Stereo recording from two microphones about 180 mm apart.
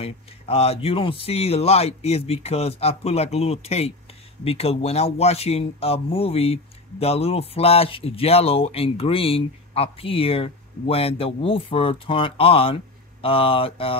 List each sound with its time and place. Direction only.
0.0 s speech: 35° left (ahead or behind)